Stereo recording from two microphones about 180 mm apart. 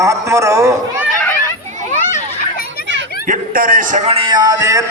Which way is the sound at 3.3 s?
50° right (ahead or behind).